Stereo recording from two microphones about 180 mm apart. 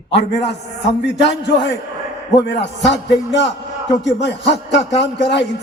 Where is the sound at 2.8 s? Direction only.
75° left (ahead or behind).